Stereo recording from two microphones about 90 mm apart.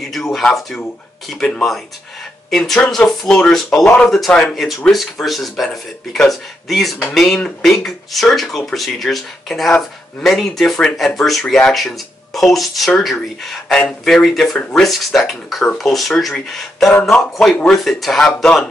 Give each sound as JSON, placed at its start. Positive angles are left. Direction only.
{"t": 0.1, "sound": "speech", "side_deg": 5}
{"t": 3.8, "sound": "speech", "side_deg": 15}
{"t": 4.1, "sound": "speech", "side_deg": 5}